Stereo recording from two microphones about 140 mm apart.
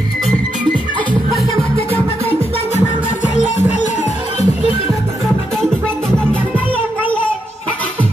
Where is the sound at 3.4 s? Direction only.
55° left (ahead or behind).